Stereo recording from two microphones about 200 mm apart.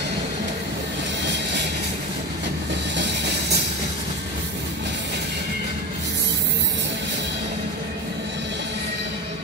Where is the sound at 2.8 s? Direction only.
60° right (ahead or behind).